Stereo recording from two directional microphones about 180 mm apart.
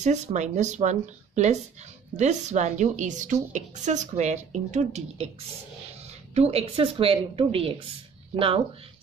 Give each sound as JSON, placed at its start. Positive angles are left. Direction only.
{"t": 0.0, "sound": "a woman's voice", "side_deg": -40}
{"t": 6.3, "sound": "a woman's voice", "side_deg": -35}